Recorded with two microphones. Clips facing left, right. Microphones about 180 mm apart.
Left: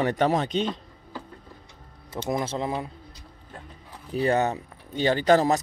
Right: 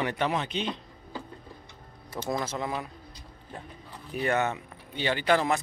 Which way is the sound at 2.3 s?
30° left (ahead or behind).